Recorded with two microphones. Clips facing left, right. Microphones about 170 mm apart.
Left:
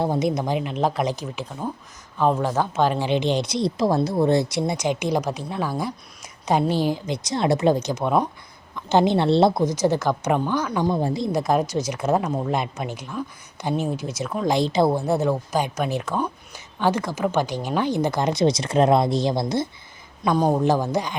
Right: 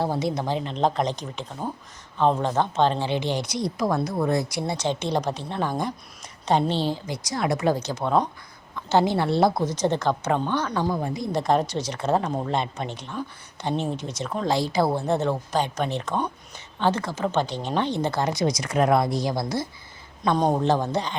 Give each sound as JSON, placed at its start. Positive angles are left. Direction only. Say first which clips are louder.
{"t": 0.0, "sound": "a woman's voice", "louder": "left 3 dB", "side_deg": 20}
{"t": 9.6, "sound": "a woman's voice", "louder": "left 2 dB", "side_deg": 10}
{"t": 10.8, "sound": "speech", "louder": "left 4 dB", "side_deg": 30}
{"t": 11.3, "sound": "a woman's voice", "louder": "right 2 dB", "side_deg": 10}
{"t": 14.5, "sound": "speech", "louder": "left 3 dB", "side_deg": 20}
{"t": 14.9, "sound": "a woman's voice", "louder": "left 2 dB", "side_deg": 10}
{"t": 20.2, "sound": "a woman's voice", "louder": "left 2 dB", "side_deg": 5}